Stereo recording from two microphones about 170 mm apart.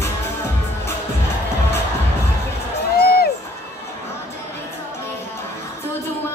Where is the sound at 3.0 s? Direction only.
65° left (ahead or behind).